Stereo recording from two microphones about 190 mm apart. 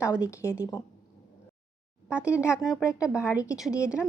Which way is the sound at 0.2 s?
15° left (ahead or behind).